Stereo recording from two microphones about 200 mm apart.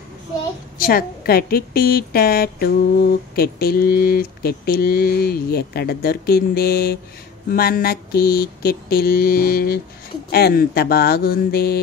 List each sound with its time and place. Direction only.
0.7 s a woman's voice: 50° left (ahead or behind)